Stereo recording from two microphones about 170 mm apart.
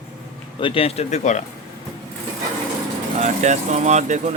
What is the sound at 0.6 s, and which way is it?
Speech, 35° left (ahead or behind).